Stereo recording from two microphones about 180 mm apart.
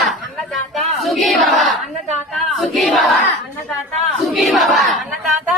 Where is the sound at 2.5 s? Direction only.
Centre (ahead or behind).